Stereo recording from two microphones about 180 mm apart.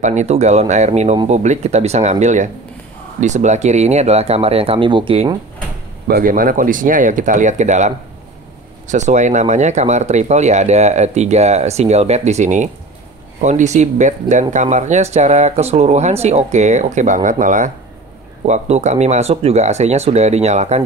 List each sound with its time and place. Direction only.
0.0 s speech: 40° right (ahead or behind)
6.0 s speech: 55° right (ahead or behind); by 20.8 s 35° right (ahead or behind)